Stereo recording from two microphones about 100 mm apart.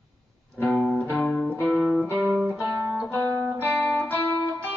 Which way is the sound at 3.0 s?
20° left (ahead or behind).